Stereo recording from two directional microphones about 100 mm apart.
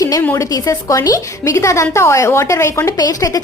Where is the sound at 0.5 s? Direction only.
35° left (ahead or behind).